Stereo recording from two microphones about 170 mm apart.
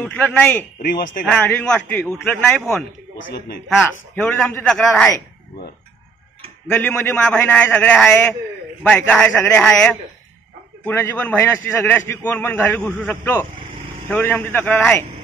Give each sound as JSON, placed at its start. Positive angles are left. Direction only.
{"t": 0.0, "sound": "a man's voice", "side_deg": 10}
{"t": 0.8, "sound": "speech", "side_deg": 60}
{"t": 1.2, "sound": "a man's voice", "side_deg": 5}
{"t": 3.2, "sound": "a man's voice", "side_deg": 70}
{"t": 3.6, "sound": "a man's voice", "side_deg": 10}
{"t": 6.7, "sound": "a man's voice", "side_deg": 10}